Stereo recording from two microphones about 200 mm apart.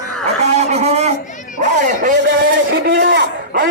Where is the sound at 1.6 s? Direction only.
40° right (ahead or behind).